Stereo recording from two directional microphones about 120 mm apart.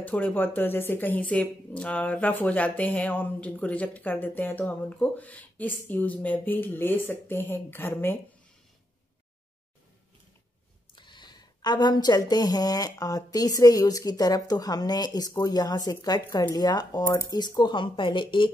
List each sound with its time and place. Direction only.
0.0 s speech: 15° left (ahead or behind)
11.0 s a woman's voice: 40° left (ahead or behind)